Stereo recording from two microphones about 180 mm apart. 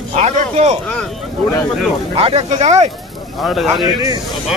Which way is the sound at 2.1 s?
30° right (ahead or behind).